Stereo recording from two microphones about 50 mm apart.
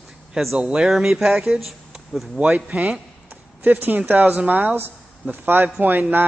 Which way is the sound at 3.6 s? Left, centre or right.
Right.